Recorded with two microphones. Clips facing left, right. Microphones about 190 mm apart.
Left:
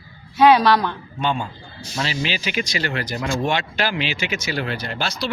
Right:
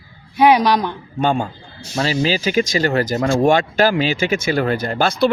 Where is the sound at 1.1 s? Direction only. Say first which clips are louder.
Right 7 dB; 45° right (ahead or behind).